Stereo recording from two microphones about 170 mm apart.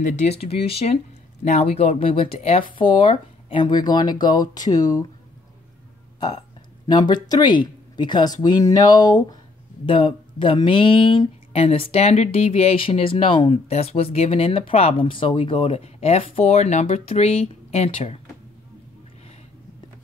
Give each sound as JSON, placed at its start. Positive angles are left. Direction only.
{"t": 0.0, "sound": "speech", "side_deg": 40}
{"t": 6.1, "sound": "speech", "side_deg": 25}